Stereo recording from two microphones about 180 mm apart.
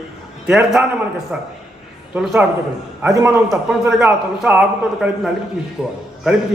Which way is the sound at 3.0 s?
15° right (ahead or behind).